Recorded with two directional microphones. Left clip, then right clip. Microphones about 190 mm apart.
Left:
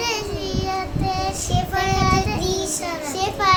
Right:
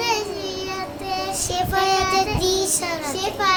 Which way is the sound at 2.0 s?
Centre (ahead or behind).